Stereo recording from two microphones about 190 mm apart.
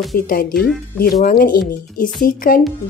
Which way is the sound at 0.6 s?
5° left (ahead or behind).